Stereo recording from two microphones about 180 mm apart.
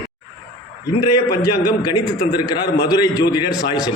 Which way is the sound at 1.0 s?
20° left (ahead or behind).